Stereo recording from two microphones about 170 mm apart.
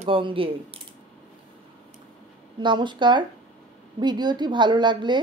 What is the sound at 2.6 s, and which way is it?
A woman's voice, 25° right (ahead or behind).